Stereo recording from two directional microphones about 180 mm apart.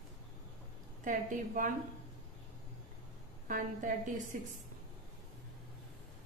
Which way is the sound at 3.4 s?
45° right (ahead or behind).